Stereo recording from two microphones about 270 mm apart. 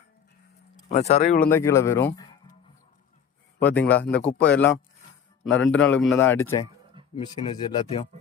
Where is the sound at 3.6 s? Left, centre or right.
Centre.